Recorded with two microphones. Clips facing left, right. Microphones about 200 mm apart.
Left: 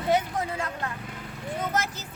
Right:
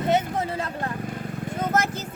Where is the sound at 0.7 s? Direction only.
45° right (ahead or behind).